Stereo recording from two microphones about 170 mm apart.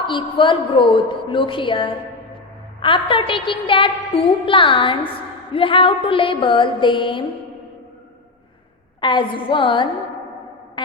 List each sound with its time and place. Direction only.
0.0 s a woman's voice: 30° left (ahead or behind)
9.0 s a woman's voice: 30° left (ahead or behind)
10.8 s music: 30° left (ahead or behind)